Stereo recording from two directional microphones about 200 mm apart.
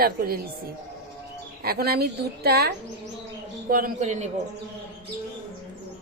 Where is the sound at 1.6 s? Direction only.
50° right (ahead or behind).